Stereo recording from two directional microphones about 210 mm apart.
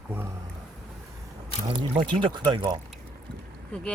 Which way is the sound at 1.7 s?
25° right (ahead or behind).